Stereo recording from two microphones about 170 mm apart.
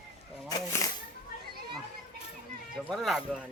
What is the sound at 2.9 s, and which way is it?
Speech, centre (ahead or behind).